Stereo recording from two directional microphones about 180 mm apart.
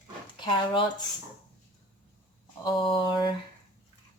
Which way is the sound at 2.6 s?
25° left (ahead or behind).